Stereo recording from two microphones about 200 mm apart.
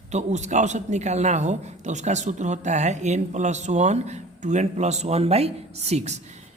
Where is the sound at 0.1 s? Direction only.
35° right (ahead or behind).